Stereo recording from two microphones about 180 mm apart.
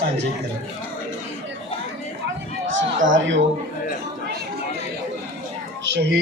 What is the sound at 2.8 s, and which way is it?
Speech, 90° right.